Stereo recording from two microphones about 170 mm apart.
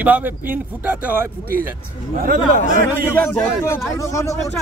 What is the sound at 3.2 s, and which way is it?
A man's voice, 10° left (ahead or behind).